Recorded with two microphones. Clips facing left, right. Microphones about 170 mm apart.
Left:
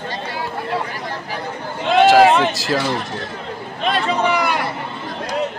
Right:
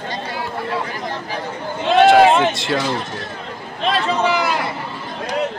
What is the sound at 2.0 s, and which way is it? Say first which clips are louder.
Speech: even; centre (ahead or behind).